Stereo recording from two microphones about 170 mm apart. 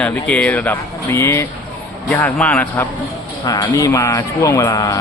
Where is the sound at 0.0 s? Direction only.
5° left (ahead or behind).